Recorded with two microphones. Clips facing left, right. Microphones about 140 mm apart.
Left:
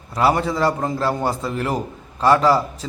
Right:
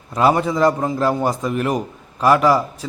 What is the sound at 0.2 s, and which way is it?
A man's voice, 20° right (ahead or behind).